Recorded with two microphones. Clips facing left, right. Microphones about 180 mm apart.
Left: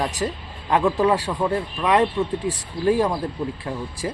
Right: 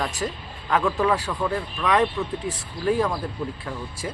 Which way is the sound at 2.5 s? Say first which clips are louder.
Left 2 dB; 35° left (ahead or behind).